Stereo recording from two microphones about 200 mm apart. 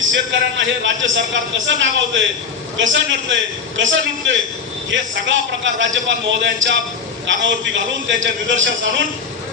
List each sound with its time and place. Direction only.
0.1 s a man's voice: 70° right (ahead or behind)